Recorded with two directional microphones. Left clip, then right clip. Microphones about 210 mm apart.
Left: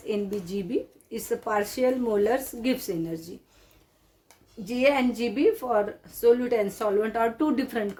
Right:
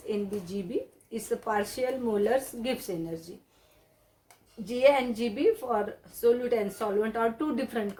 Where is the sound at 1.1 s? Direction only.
40° left (ahead or behind).